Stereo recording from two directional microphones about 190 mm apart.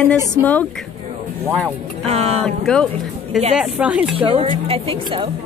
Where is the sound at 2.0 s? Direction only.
35° right (ahead or behind).